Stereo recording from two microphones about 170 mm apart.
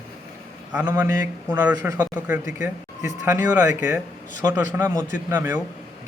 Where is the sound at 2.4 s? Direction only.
45° left (ahead or behind).